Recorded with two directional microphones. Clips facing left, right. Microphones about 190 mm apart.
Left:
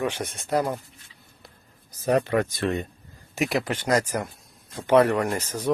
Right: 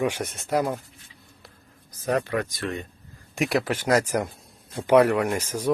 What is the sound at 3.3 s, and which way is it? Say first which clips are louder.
Speech: right 1 dB; centre (ahead or behind).